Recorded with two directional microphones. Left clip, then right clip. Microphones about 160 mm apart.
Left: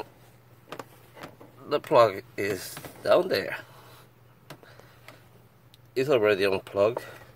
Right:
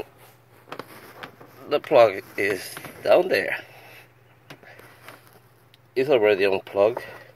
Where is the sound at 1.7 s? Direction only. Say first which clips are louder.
Right 4 dB; 20° left (ahead or behind).